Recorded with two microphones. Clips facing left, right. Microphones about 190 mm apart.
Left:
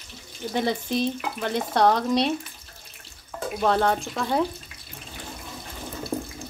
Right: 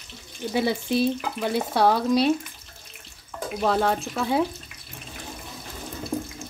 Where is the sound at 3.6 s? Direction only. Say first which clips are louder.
Left 1 dB; 5° right (ahead or behind).